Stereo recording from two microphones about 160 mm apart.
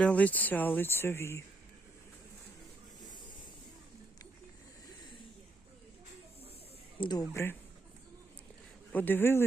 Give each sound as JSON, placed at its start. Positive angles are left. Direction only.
{"t": 0.0, "sound": "speech", "side_deg": 10}
{"t": 7.0, "sound": "speech", "side_deg": 25}
{"t": 8.9, "sound": "speech", "side_deg": 10}